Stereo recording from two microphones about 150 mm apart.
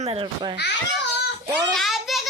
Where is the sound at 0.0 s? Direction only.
45° right (ahead or behind).